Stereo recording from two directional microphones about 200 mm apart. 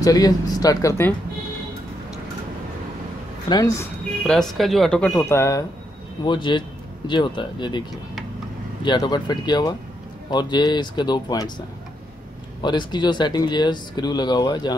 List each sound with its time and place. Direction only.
0.0 s speech: 20° left (ahead or behind)
3.4 s speech: 20° left (ahead or behind)
4.3 s speech: centre (ahead or behind); by 7.8 s 20° left (ahead or behind)
8.8 s speech: 20° left (ahead or behind)
12.6 s speech: 20° left (ahead or behind)